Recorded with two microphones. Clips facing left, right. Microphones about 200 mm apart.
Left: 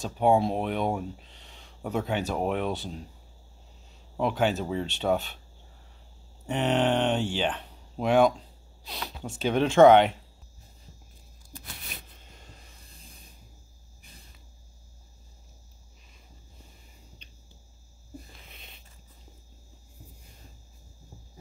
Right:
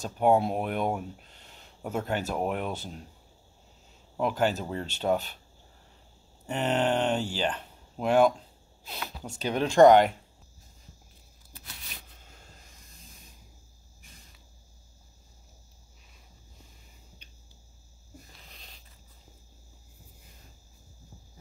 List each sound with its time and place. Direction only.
0.0 s speech: 5° right (ahead or behind)
4.2 s speech: centre (ahead or behind)
6.4 s speech: centre (ahead or behind)
12.8 s a sound: 30° left (ahead or behind)
18.5 s biting: 5° left (ahead or behind)